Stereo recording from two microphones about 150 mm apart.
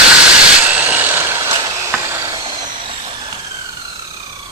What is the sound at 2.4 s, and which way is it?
Vehicle, 35° right (ahead or behind).